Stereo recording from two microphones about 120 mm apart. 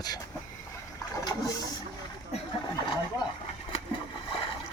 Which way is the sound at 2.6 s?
35° left (ahead or behind).